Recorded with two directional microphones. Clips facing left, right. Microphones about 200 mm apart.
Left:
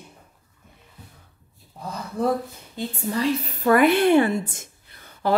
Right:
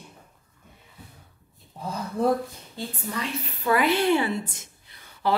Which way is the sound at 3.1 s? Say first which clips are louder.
Left 10 dB; 35° left (ahead or behind).